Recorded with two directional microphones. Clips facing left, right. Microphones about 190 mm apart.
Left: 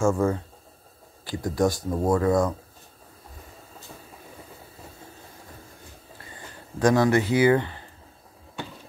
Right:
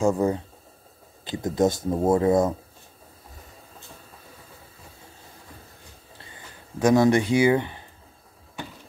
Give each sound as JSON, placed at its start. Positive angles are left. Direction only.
{"t": 0.0, "sound": "speech", "side_deg": -20}
{"t": 6.8, "sound": "speech", "side_deg": -10}